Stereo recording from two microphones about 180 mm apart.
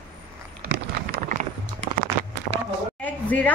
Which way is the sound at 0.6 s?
50° right (ahead or behind).